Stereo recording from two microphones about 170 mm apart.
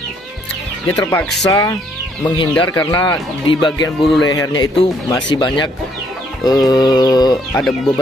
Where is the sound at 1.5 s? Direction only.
20° left (ahead or behind).